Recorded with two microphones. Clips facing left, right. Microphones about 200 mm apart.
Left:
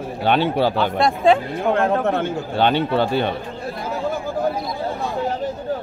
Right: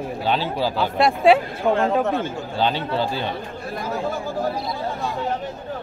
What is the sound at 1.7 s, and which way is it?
Speech, 60° left (ahead or behind).